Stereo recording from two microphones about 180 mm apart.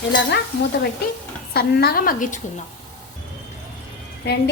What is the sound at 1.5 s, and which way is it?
Speech, 60° left (ahead or behind).